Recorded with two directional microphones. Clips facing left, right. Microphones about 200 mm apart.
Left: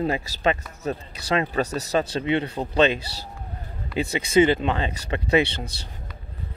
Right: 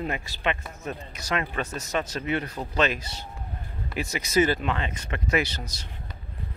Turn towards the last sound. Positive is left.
turn(degrees=30)  # may be behind; listen again after turning